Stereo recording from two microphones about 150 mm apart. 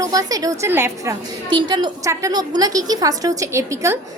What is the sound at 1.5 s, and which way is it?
A woman's voice, 30° right (ahead or behind).